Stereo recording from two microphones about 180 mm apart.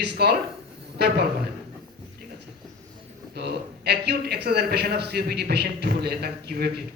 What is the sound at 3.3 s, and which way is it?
A man's voice, 65° right (ahead or behind).